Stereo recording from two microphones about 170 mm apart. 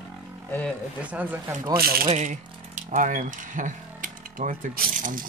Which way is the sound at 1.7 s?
65° right (ahead or behind).